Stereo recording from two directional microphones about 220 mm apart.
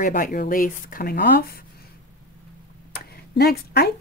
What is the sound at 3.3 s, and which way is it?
Speech, 45° left (ahead or behind).